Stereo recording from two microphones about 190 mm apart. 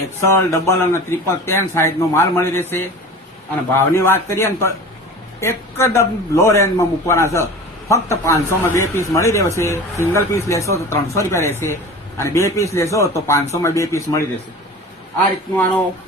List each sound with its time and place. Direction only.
0.3 s a man's voice: 15° left (ahead or behind)
15.5 s a man's voice: 10° left (ahead or behind)